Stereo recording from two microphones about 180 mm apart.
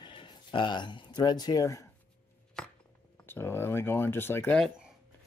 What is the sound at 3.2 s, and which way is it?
Speech, 10° left (ahead or behind).